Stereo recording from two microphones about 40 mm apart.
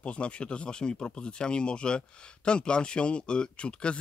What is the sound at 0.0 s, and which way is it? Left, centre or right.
Speech, left.